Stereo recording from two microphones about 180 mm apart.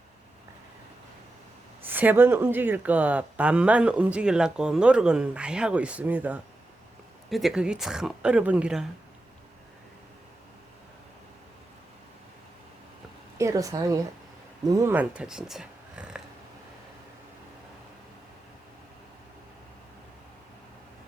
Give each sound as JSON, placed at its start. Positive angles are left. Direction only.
{"t": 1.8, "sound": "speech", "side_deg": -10}
{"t": 13.4, "sound": "a woman's voice", "side_deg": -20}